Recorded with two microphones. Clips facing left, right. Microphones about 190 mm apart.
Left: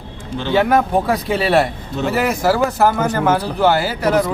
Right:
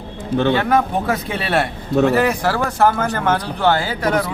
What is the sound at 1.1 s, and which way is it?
A man's voice, centre (ahead or behind).